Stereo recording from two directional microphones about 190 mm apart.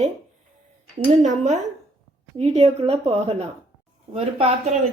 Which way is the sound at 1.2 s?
40° right (ahead or behind).